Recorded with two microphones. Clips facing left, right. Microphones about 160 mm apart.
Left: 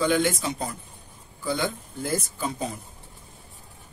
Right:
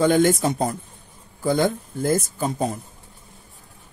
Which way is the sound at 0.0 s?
45° right (ahead or behind).